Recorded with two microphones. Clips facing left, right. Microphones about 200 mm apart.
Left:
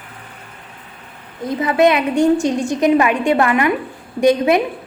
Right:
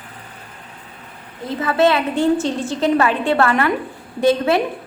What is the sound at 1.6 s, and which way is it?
A woman's voice, 15° left (ahead or behind).